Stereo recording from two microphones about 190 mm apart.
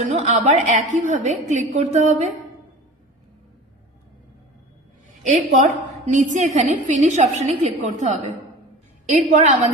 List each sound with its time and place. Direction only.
0.1 s a woman's voice: 35° right (ahead or behind)
5.2 s a woman's voice: 40° right (ahead or behind)